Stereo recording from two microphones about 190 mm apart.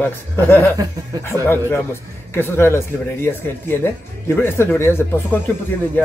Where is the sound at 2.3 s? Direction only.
10° left (ahead or behind).